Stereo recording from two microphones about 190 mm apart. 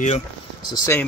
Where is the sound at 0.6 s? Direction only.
15° left (ahead or behind).